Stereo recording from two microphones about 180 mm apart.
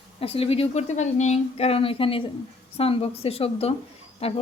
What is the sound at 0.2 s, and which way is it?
Speech, 30° left (ahead or behind).